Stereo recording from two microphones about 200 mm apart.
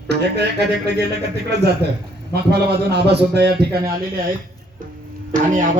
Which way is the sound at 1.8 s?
55° right (ahead or behind).